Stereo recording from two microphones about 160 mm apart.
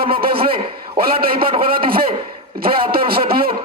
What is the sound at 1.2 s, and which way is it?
Speech, 70° right (ahead or behind).